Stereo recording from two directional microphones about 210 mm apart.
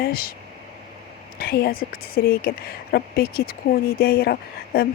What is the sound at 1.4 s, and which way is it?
Speech, 45° left (ahead or behind).